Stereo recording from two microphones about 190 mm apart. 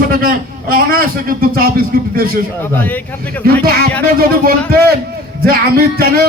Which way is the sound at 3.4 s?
50° right (ahead or behind).